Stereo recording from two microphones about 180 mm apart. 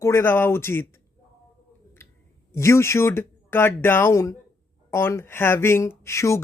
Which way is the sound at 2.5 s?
15° left (ahead or behind).